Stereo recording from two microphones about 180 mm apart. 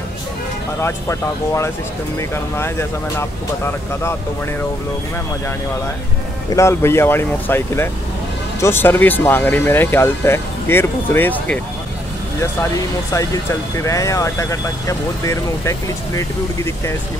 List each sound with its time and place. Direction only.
0.8 s speech: 15° left (ahead or behind)
6.5 s speech: 15° left (ahead or behind)
12.7 s speech: 15° left (ahead or behind)